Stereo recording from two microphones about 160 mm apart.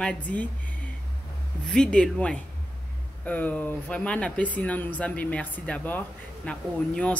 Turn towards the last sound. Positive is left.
turn(degrees=5)  # may be behind; listen again after turning